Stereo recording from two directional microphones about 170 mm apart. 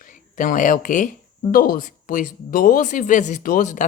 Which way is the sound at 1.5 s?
60° left (ahead or behind).